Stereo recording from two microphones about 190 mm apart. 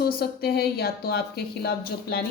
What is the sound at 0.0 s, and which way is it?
A woman's voice, 55° left (ahead or behind).